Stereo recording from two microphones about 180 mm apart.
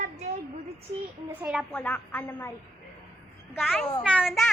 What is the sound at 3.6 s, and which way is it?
Speech, centre (ahead or behind).